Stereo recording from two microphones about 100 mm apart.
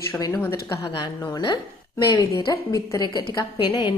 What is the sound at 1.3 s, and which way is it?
A woman's voice, 45° left (ahead or behind).